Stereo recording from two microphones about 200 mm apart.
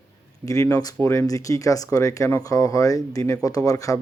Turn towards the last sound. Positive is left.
turn(degrees=15)  # may be behind; listen again after turning